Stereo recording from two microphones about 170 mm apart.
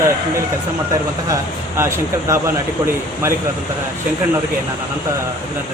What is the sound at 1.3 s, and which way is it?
Speech, 15° right (ahead or behind).